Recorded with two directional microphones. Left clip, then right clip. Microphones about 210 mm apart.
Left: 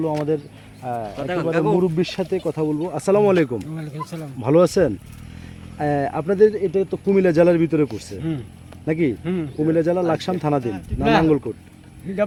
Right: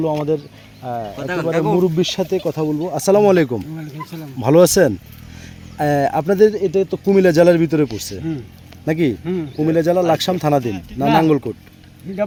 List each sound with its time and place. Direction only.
0.0 s speech: 40° right (ahead or behind)
3.8 s speech: 10° left (ahead or behind)
4.4 s speech: 50° right (ahead or behind)
9.2 s speech: centre (ahead or behind)
9.6 s speech: 50° right (ahead or behind)
12.1 s speech: 5° left (ahead or behind)